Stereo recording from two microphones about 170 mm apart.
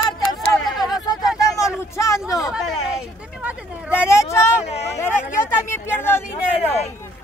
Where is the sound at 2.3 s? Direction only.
Centre (ahead or behind).